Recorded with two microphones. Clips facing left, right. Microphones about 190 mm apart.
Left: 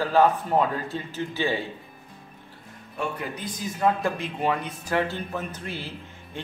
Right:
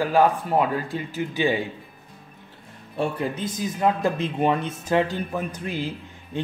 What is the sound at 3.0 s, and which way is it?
A woman's voice, 25° right (ahead or behind).